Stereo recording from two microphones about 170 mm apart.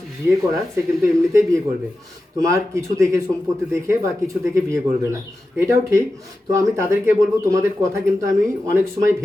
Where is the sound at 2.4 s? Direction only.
20° right (ahead or behind).